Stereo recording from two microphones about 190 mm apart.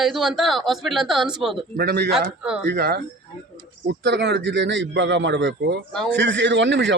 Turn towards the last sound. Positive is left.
turn(degrees=-65)  # may be behind; listen again after turning